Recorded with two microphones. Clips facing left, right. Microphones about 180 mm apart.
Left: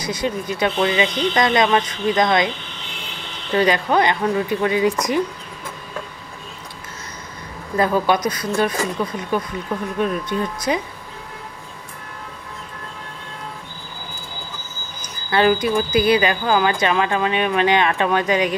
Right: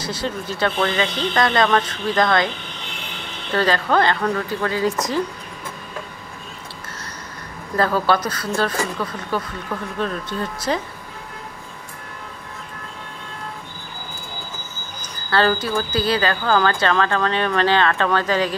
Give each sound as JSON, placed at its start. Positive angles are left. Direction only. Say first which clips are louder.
{"t": 0.2, "sound": "speech", "louder": "left 2 dB", "side_deg": 15}
{"t": 3.5, "sound": "speech", "louder": "left 1 dB", "side_deg": 15}
{"t": 7.7, "sound": "speech", "louder": "left 1 dB", "side_deg": 15}
{"t": 15.2, "sound": "speech", "louder": "left 3 dB", "side_deg": 15}